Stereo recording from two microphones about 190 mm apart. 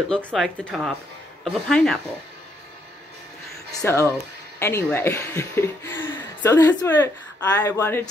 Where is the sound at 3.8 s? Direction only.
15° left (ahead or behind).